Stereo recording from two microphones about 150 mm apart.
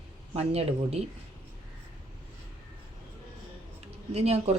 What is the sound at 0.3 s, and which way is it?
Speech, 45° right (ahead or behind).